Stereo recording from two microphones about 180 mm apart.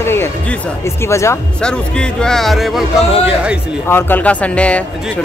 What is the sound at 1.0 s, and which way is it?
Speech, 15° left (ahead or behind).